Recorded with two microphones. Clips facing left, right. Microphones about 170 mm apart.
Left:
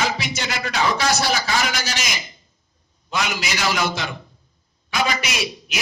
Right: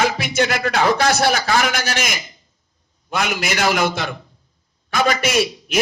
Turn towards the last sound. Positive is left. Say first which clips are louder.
# right 9 dB
turn(degrees=-50)  # may be behind; listen again after turning